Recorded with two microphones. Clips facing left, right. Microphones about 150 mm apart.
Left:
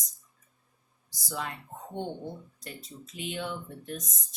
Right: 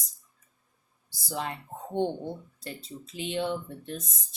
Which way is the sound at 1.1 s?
30° right (ahead or behind).